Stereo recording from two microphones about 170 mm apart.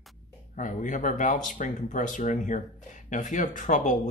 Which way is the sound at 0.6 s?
50° left (ahead or behind).